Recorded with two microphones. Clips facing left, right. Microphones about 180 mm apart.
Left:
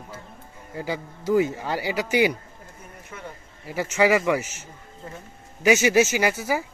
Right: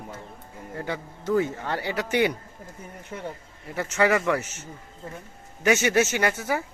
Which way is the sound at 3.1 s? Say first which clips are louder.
Right 4 dB; 35° right (ahead or behind).